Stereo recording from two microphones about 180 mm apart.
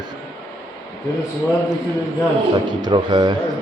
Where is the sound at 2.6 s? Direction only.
25° right (ahead or behind).